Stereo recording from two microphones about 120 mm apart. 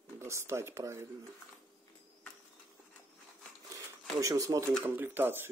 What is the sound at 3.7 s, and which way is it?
Speech, 30° right (ahead or behind).